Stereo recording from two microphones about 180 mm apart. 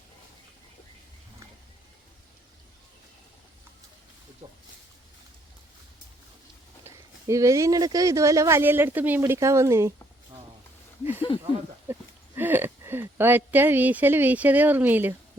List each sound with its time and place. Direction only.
6.8 s speech: 15° right (ahead or behind)
11.3 s a sound: 30° left (ahead or behind)
12.4 s speech: 10° right (ahead or behind)